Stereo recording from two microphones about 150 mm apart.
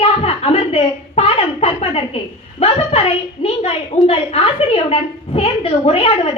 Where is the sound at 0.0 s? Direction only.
40° left (ahead or behind).